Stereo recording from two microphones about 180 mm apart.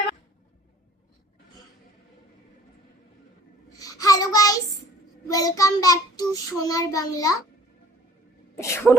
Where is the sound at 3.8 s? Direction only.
20° left (ahead or behind).